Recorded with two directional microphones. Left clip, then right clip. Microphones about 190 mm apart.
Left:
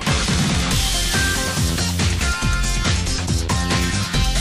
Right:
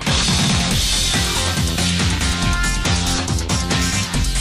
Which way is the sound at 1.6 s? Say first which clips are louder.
Right 3 dB; centre (ahead or behind).